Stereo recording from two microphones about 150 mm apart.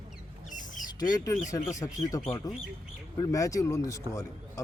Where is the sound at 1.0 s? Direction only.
25° left (ahead or behind).